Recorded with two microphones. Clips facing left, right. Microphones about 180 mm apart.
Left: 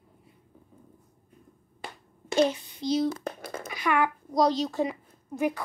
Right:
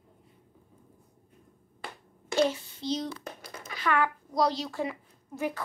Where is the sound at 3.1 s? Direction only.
55° left (ahead or behind).